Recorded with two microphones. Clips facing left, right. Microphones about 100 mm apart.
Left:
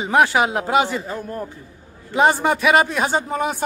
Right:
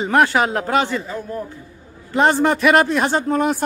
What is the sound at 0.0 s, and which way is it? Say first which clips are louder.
Speech: right 1 dB; 5° left (ahead or behind).